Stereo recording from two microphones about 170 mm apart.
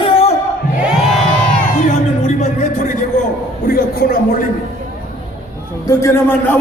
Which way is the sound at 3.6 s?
60° left (ahead or behind).